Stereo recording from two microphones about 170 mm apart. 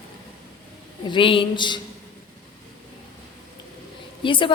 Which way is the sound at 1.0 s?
30° left (ahead or behind).